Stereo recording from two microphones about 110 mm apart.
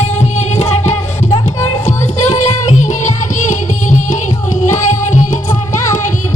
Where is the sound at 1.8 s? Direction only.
90° left.